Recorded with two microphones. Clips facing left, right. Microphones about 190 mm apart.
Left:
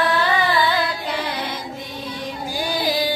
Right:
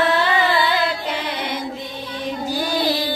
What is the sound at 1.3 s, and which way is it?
Child singing, 25° right (ahead or behind).